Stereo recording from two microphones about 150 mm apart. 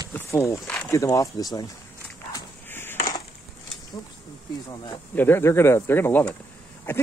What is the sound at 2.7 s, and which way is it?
Coin, 15° left (ahead or behind).